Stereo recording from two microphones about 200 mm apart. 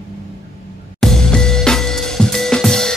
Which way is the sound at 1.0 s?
5° left (ahead or behind).